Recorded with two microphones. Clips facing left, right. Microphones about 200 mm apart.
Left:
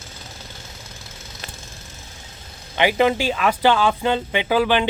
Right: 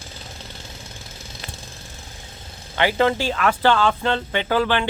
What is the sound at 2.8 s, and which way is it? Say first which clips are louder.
Speech: left 1 dB; 15° left (ahead or behind).